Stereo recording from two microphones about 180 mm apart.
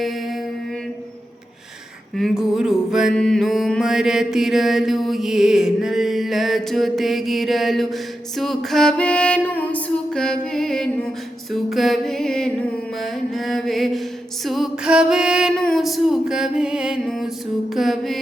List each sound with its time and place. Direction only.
2.1 s mantra: centre (ahead or behind)